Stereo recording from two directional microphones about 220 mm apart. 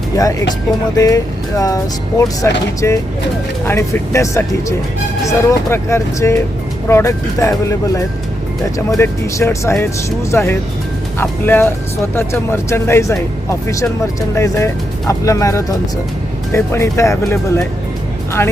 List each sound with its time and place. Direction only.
0.2 s speech: 15° left (ahead or behind)